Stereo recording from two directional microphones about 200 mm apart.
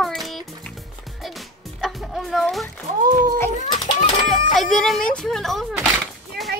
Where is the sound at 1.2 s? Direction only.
Centre (ahead or behind).